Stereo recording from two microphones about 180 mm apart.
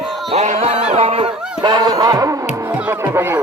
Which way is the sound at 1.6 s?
20° right (ahead or behind).